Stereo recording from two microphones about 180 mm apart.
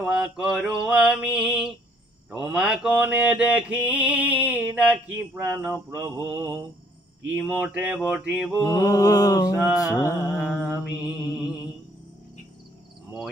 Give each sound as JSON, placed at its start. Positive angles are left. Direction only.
{"t": 0.0, "sound": "mantra", "side_deg": -5}
{"t": 8.6, "sound": "mantra", "side_deg": 20}
{"t": 10.3, "sound": "mantra", "side_deg": -5}